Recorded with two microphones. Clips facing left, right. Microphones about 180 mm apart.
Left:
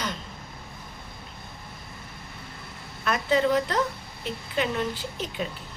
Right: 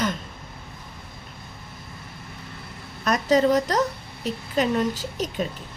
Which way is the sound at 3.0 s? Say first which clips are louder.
Right 4 dB; 40° right (ahead or behind).